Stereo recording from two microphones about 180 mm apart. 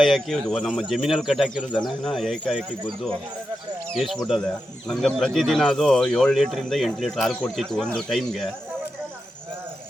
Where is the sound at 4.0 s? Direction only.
Centre (ahead or behind).